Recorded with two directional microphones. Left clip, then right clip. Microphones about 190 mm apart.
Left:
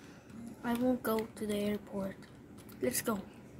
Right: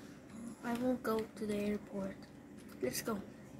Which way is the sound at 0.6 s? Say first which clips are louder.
Left 4 dB; 15° left (ahead or behind).